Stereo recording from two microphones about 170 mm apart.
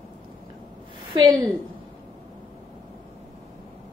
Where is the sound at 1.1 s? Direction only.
25° right (ahead or behind).